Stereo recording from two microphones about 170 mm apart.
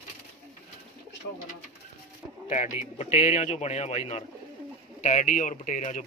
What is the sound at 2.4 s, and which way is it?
Speech, 45° left (ahead or behind).